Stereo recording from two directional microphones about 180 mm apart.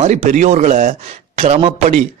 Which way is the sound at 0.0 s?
40° right (ahead or behind).